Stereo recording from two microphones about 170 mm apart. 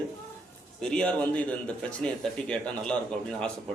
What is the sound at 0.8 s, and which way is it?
A man's voice, 5° left (ahead or behind).